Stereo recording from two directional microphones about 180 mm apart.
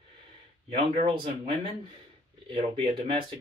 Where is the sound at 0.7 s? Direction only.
30° right (ahead or behind).